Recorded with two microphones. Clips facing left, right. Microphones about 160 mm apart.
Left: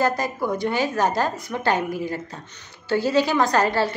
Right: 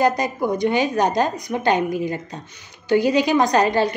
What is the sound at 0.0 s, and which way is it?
A woman's voice, 20° right (ahead or behind).